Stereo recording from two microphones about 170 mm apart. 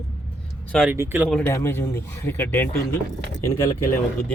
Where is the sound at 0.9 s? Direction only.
10° right (ahead or behind).